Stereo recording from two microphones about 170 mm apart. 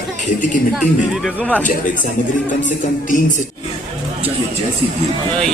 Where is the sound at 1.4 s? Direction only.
10° left (ahead or behind).